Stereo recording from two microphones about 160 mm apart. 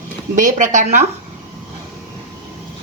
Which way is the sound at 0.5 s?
50° right (ahead or behind).